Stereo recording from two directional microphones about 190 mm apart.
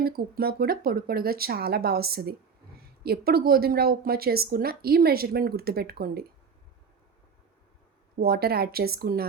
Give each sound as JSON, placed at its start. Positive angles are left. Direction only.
{"t": 0.0, "sound": "a woman's voice", "side_deg": -50}
{"t": 8.2, "sound": "speech", "side_deg": -55}